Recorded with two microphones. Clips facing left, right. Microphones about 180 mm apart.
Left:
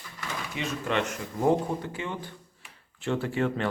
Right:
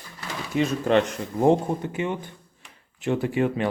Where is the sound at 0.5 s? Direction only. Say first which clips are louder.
Right 9 dB; 35° right (ahead or behind); by 3.7 s 15° right (ahead or behind).